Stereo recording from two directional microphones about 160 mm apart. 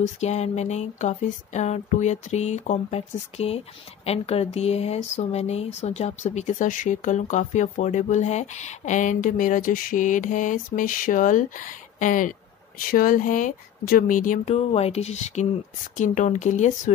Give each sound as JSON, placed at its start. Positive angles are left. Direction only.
{"t": 0.0, "sound": "speech", "side_deg": 45}